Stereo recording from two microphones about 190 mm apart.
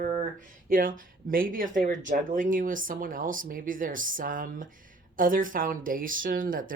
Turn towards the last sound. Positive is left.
turn(degrees=-45)  # may be behind; listen again after turning